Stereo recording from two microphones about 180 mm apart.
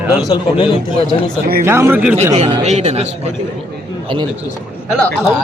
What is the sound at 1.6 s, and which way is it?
Speech, 15° right (ahead or behind).